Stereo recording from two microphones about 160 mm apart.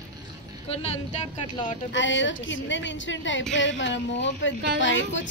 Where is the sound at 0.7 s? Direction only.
45° left (ahead or behind).